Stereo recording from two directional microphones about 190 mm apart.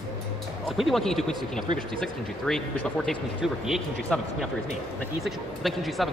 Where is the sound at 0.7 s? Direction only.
Centre (ahead or behind).